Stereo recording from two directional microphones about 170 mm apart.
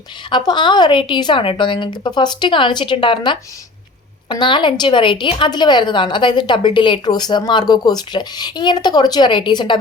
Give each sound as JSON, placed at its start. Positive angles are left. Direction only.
{"t": 0.3, "sound": "a woman's voice", "side_deg": 25}